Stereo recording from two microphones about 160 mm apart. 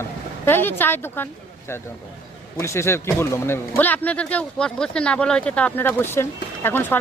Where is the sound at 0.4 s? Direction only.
15° left (ahead or behind).